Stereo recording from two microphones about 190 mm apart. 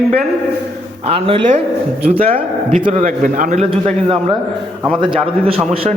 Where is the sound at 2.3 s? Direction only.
45° right (ahead or behind).